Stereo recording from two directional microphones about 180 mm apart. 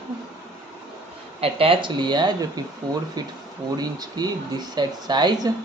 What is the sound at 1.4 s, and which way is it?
Speech, 30° right (ahead or behind).